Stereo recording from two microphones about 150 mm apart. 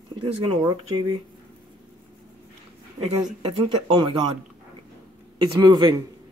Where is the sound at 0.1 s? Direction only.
30° right (ahead or behind).